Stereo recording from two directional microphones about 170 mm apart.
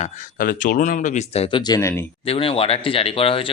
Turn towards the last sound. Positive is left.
turn(degrees=30)  # may be behind; listen again after turning